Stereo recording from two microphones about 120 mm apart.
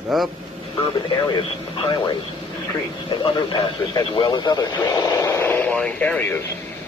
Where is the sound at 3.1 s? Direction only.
40° left (ahead or behind); by 6.4 s 15° left (ahead or behind).